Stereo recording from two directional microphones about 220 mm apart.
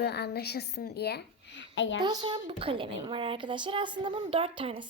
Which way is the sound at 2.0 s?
20° right (ahead or behind).